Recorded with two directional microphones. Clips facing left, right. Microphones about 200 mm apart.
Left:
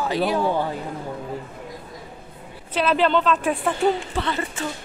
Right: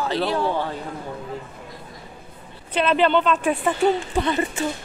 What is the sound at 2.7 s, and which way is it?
Speech, centre (ahead or behind).